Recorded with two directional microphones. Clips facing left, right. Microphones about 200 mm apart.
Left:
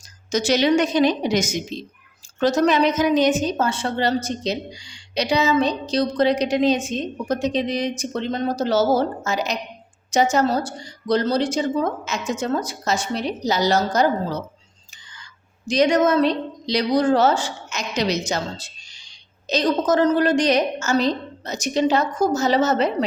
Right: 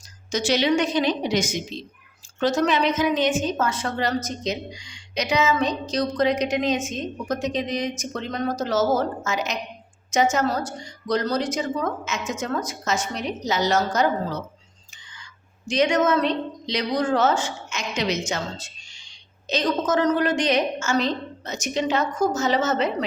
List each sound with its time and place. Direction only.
0.3 s a woman's voice: 40° left (ahead or behind)
15.6 s a woman's voice: 35° left (ahead or behind)